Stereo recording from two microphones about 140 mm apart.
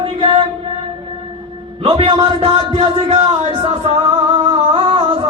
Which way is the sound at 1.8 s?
40° right (ahead or behind).